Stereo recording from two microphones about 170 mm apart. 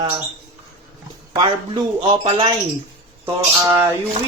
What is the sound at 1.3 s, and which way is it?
Speech, 25° right (ahead or behind).